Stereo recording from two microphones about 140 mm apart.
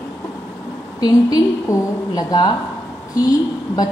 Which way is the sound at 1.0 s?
25° left (ahead or behind).